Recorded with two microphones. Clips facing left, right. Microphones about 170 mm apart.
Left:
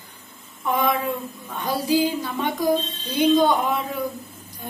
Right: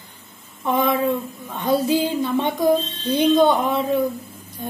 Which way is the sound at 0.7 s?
30° right (ahead or behind).